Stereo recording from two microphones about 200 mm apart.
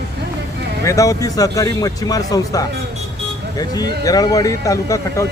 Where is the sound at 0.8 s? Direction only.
15° left (ahead or behind).